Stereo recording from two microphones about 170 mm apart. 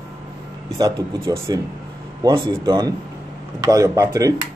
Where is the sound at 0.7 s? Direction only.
20° right (ahead or behind).